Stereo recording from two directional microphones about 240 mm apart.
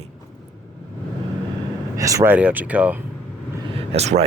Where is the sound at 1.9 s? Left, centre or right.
Centre.